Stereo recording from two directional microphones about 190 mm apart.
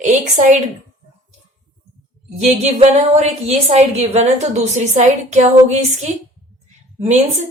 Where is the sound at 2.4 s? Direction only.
35° right (ahead or behind).